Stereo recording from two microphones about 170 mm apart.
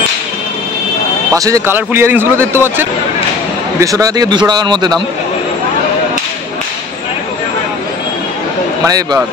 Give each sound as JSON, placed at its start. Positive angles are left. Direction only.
{"t": 1.3, "sound": "a man's voice", "side_deg": -20}
{"t": 8.8, "sound": "speech", "side_deg": -20}